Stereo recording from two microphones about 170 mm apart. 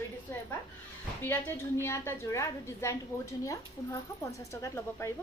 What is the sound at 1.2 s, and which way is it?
A woman's voice, 10° left (ahead or behind).